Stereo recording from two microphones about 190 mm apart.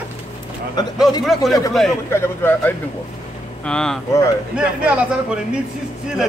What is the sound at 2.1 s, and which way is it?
A man's voice, 10° left (ahead or behind).